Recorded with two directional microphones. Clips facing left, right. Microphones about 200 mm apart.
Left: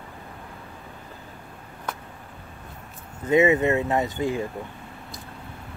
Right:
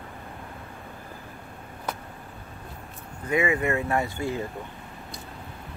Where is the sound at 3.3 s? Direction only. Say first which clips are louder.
Left 6 dB; 20° left (ahead or behind).